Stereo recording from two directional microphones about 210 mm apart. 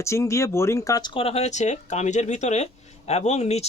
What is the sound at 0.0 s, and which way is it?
Speech, 15° left (ahead or behind).